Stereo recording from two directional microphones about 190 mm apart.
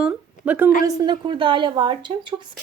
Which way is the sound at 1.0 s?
25° right (ahead or behind).